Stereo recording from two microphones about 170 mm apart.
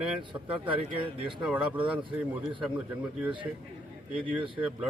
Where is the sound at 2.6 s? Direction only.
5° right (ahead or behind).